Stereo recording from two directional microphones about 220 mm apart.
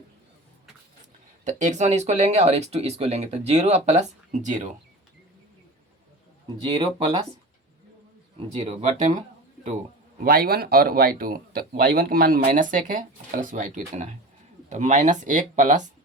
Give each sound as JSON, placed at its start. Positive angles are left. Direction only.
{"t": 1.5, "sound": "speech", "side_deg": -35}
{"t": 6.7, "sound": "speech", "side_deg": -25}
{"t": 8.4, "sound": "speech", "side_deg": -30}
{"t": 10.2, "sound": "speech", "side_deg": -40}